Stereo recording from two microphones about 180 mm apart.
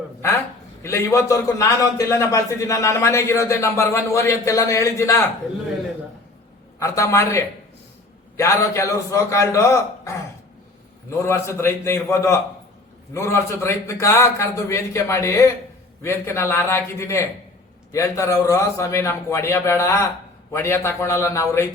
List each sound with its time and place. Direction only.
0.8 s a man's voice: 15° left (ahead or behind)
6.7 s a man's voice: 15° left (ahead or behind)
11.2 s a man's voice: 15° left (ahead or behind)